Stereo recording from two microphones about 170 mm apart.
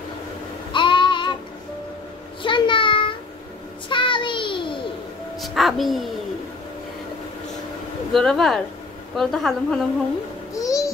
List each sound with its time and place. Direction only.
0.7 s child singing: 30° left (ahead or behind)
2.4 s child singing: 30° left (ahead or behind)
5.4 s a child's voice: centre (ahead or behind)
8.1 s a woman's voice: centre (ahead or behind)
10.5 s music: 20° left (ahead or behind)